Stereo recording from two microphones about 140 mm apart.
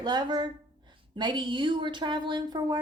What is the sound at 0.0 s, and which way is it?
A woman's voice, 30° right (ahead or behind).